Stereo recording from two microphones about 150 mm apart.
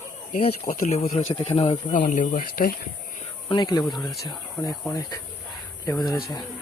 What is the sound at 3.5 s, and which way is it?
Speech, 25° left (ahead or behind).